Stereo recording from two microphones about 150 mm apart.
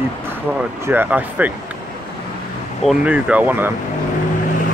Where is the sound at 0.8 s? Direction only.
10° right (ahead or behind).